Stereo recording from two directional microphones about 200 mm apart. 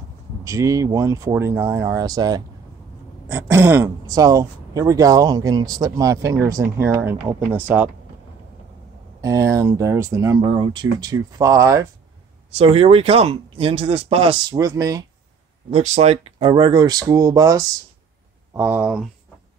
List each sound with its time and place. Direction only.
0.4 s speech: 15° right (ahead or behind)
9.2 s speech: 15° right (ahead or behind)
12.4 s speech: 30° right (ahead or behind)
15.7 s speech: 35° right (ahead or behind); by 19.0 s 10° right (ahead or behind)